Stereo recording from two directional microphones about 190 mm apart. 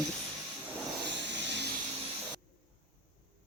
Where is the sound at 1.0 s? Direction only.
65° right (ahead or behind).